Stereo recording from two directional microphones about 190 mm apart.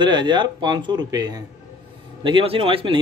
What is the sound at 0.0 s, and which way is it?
A man's voice, 25° right (ahead or behind).